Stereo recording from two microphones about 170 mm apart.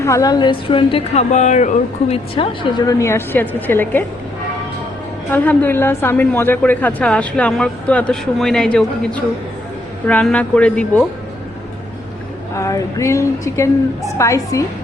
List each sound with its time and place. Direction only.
0.0 s speech: 20° left (ahead or behind)
1.3 s speech: 45° left (ahead or behind); by 4.0 s 10° left (ahead or behind)
5.3 s a woman's voice: 10° left (ahead or behind)
12.5 s a woman's voice: 20° left (ahead or behind)